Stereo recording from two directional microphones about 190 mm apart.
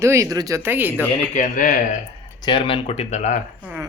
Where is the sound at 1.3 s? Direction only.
45° left (ahead or behind).